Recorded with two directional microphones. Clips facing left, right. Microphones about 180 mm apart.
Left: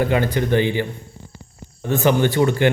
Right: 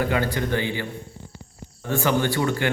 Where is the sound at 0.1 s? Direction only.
20° left (ahead or behind).